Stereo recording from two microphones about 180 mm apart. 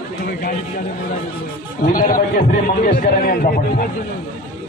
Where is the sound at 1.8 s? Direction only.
50° left (ahead or behind).